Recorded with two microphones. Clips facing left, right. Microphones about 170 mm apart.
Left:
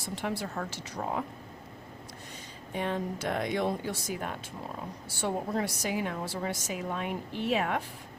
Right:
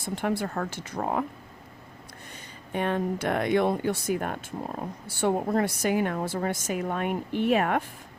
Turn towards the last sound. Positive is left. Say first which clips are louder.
# right 6 dB
turn(degrees=-55)  # may be behind; listen again after turning